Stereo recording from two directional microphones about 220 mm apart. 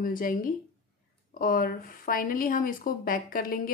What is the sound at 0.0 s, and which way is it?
Speech, 40° left (ahead or behind).